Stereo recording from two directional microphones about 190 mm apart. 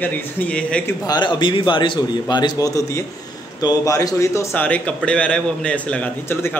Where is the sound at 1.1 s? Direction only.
25° left (ahead or behind).